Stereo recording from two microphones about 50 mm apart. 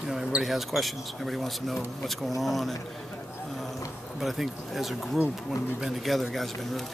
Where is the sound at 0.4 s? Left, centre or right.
Centre.